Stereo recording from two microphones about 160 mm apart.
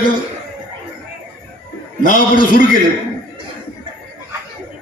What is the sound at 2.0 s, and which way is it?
Speech, 60° left (ahead or behind).